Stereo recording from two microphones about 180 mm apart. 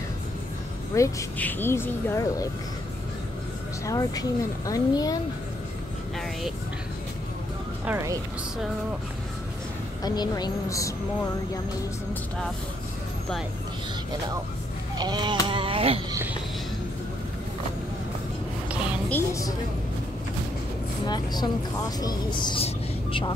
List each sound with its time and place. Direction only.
0.9 s speech: 15° left (ahead or behind)
3.8 s speech: 20° left (ahead or behind)
7.8 s speech: 15° right (ahead or behind)
10.0 s speech: 20° left (ahead or behind)
15.0 s a sound: 25° right (ahead or behind)
19.0 s speech: 15° left (ahead or behind)
21.1 s speech: 20° left (ahead or behind)